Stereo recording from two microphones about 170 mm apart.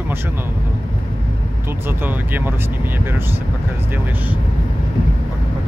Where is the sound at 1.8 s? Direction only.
10° right (ahead or behind).